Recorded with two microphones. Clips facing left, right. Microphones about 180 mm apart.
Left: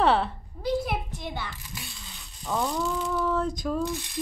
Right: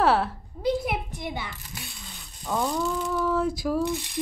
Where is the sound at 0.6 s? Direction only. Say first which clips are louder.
Right 2 dB; 15° right (ahead or behind).